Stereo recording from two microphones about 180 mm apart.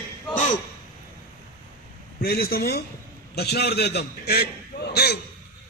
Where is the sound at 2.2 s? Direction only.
55° left (ahead or behind).